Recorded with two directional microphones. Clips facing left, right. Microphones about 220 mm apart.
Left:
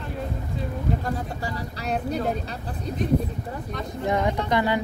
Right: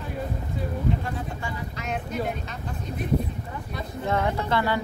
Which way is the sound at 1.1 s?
40° left (ahead or behind).